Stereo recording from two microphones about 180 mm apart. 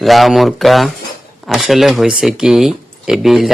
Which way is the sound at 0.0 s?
Centre (ahead or behind).